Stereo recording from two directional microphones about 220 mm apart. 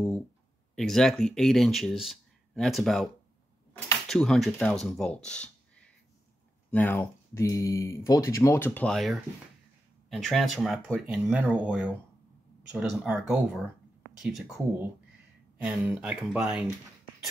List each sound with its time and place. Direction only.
0.7 s speech: centre (ahead or behind)